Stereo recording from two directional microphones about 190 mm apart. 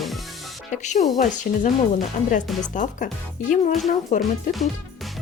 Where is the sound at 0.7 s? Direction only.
40° left (ahead or behind).